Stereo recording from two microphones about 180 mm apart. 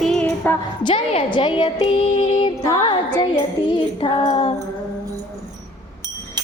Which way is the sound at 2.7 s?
25° left (ahead or behind).